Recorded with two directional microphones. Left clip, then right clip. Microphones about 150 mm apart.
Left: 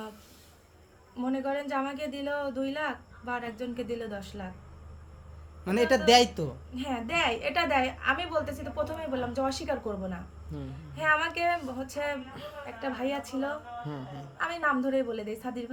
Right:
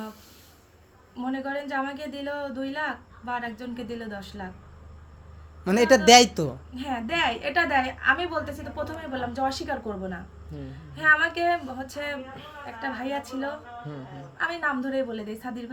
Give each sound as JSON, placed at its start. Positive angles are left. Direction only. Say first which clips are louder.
{"t": 1.1, "sound": "a woman's voice", "louder": "right 1 dB", "side_deg": 5}
{"t": 5.6, "sound": "a man's voice", "louder": "right 6 dB", "side_deg": -45}
{"t": 6.7, "sound": "a woman's voice", "louder": "right 2 dB", "side_deg": 5}